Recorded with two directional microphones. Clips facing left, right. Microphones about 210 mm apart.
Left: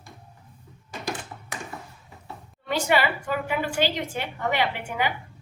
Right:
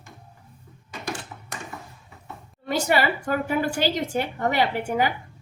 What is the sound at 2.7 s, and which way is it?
A woman's voice, 40° right (ahead or behind).